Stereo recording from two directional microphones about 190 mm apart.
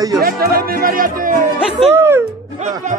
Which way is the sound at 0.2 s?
50° right (ahead or behind).